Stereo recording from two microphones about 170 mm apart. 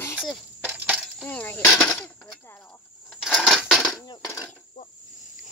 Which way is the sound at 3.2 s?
Centre (ahead or behind).